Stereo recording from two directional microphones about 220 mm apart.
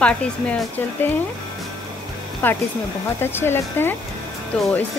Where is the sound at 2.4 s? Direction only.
10° left (ahead or behind).